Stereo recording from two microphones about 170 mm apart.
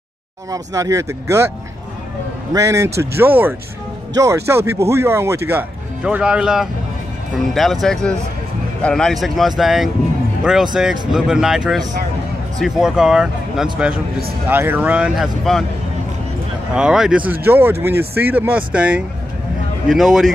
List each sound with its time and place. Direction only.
0.5 s speech: 20° right (ahead or behind)
2.5 s speech: 20° right (ahead or behind); by 15.6 s centre (ahead or behind)
16.7 s speech: 5° right (ahead or behind)